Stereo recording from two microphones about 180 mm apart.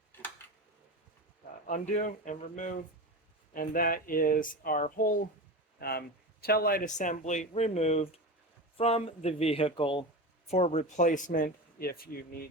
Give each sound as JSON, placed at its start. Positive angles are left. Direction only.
{"t": 1.6, "sound": "speech", "side_deg": 45}